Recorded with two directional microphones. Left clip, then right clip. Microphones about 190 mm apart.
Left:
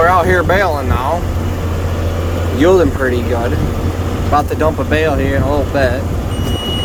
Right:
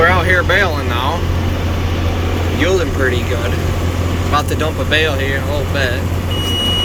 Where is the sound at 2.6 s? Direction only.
35° left (ahead or behind).